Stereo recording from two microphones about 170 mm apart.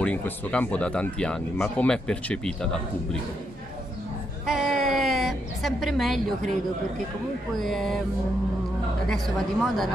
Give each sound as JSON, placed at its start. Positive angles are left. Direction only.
{"t": 0.0, "sound": "speech", "side_deg": 5}
{"t": 4.5, "sound": "a sound", "side_deg": 0}
{"t": 7.5, "sound": "speech", "side_deg": 0}
{"t": 9.0, "sound": "speech", "side_deg": 0}